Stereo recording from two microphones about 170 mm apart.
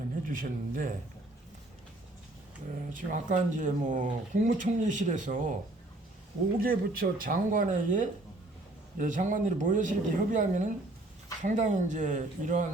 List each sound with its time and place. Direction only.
0.3 s speech: 55° right (ahead or behind)
2.9 s speech: 50° right (ahead or behind)
6.6 s speech: 60° right (ahead or behind)